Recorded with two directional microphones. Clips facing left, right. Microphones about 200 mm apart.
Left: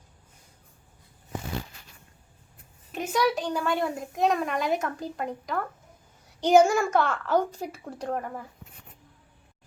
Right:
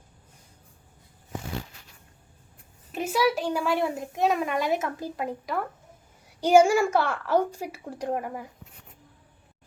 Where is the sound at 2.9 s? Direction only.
5° right (ahead or behind).